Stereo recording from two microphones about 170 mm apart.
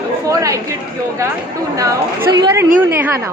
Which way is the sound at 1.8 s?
20° right (ahead or behind).